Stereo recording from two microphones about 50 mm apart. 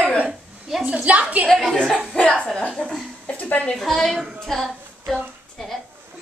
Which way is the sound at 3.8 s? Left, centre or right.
Centre.